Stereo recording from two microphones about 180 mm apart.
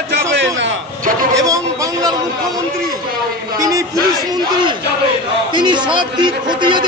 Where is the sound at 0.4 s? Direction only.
90° right.